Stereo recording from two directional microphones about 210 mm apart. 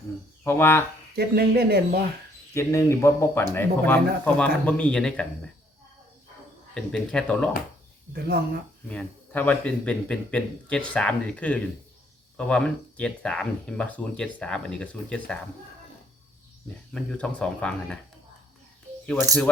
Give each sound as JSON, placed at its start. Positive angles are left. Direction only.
{"t": 0.4, "sound": "speech", "side_deg": 10}
{"t": 1.1, "sound": "speech", "side_deg": -50}
{"t": 2.6, "sound": "speech", "side_deg": 15}
{"t": 6.7, "sound": "speech", "side_deg": 5}
{"t": 8.1, "sound": "speech", "side_deg": -50}
{"t": 8.9, "sound": "speech", "side_deg": 5}
{"t": 16.9, "sound": "speech", "side_deg": 5}